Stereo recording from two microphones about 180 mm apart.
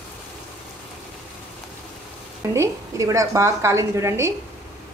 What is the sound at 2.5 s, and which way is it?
A woman's voice, 15° right (ahead or behind).